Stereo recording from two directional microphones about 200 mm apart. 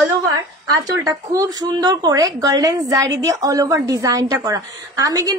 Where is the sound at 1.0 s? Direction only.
20° right (ahead or behind).